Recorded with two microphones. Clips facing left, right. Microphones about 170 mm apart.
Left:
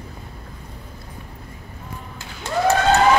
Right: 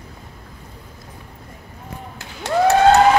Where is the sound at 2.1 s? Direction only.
70° right (ahead or behind).